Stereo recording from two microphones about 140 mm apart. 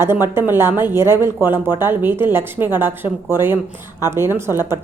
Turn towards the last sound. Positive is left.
turn(degrees=-15)  # may be behind; listen again after turning